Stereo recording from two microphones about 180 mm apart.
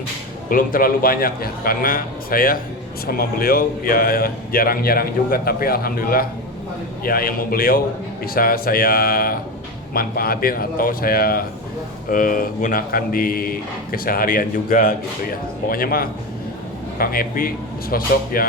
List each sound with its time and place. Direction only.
0.5 s speech: 50° left (ahead or behind)